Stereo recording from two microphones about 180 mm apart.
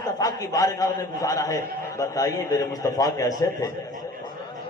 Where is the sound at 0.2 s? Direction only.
20° left (ahead or behind).